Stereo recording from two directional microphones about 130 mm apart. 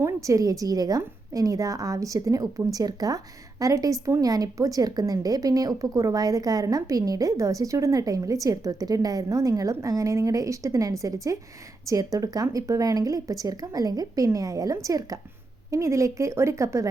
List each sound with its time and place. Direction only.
0.0 s a woman's voice: 25° right (ahead or behind)